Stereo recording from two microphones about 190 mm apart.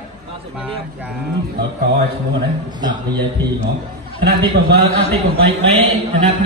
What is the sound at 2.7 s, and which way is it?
Speech, 20° right (ahead or behind).